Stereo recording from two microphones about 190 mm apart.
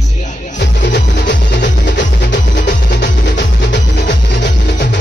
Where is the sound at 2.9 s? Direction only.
65° left (ahead or behind).